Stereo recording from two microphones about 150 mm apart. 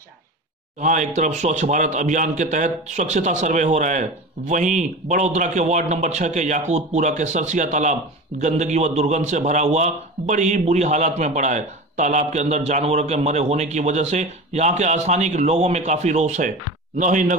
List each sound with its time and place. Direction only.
0.7 s speech: 55° right (ahead or behind)